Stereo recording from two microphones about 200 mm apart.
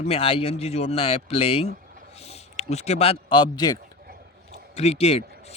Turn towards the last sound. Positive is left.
turn(degrees=30)  # may be behind; listen again after turning